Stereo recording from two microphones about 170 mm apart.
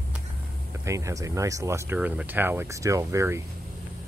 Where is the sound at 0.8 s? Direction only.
20° right (ahead or behind).